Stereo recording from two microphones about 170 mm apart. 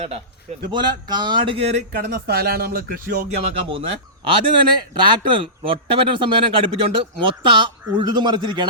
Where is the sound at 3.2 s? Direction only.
35° right (ahead or behind).